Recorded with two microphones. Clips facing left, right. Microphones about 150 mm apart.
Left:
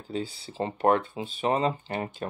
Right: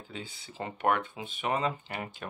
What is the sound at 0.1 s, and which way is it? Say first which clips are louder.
Speech: left 12 dB; 35° left (ahead or behind).